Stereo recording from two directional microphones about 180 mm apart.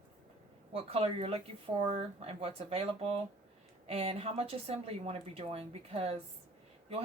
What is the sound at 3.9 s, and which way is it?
Speech, 35° right (ahead or behind).